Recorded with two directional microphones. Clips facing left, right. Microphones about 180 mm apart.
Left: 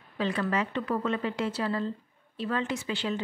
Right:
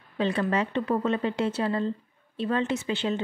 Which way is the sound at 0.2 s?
30° right (ahead or behind).